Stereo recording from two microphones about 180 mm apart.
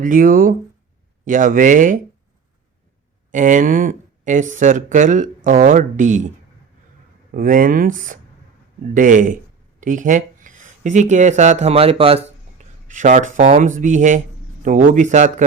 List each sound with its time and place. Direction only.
0.0 s speech: 50° right (ahead or behind)
3.3 s speech: 45° right (ahead or behind)
12.9 s speech: 45° right (ahead or behind)